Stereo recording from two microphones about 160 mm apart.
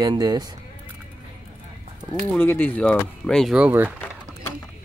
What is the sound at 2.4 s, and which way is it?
Speech, 10° left (ahead or behind).